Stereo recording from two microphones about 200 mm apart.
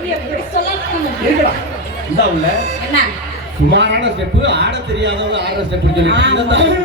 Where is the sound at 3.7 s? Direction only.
60° right (ahead or behind).